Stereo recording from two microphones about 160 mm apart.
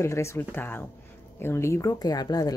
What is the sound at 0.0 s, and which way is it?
Speech, 15° left (ahead or behind).